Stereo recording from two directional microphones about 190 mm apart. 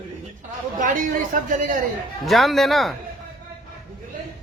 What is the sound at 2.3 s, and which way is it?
Speech, centre (ahead or behind).